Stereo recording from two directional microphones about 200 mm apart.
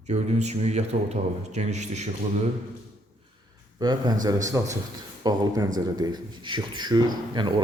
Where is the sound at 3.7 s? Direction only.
20° right (ahead or behind).